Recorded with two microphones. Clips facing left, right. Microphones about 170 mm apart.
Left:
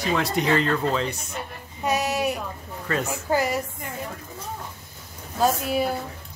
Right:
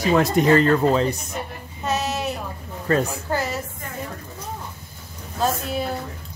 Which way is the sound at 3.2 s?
15° left (ahead or behind).